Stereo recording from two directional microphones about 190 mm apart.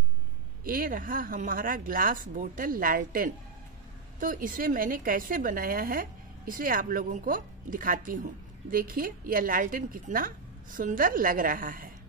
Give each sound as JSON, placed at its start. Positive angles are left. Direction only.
{"t": 0.7, "sound": "a woman's voice", "side_deg": -45}